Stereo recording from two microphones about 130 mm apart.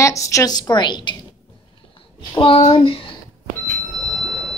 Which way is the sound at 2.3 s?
40° left (ahead or behind).